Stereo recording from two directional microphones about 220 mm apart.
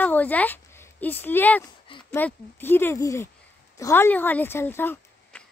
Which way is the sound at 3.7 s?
10° left (ahead or behind).